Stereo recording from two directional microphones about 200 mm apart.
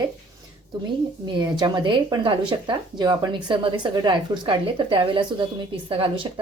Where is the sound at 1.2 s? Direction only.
20° right (ahead or behind).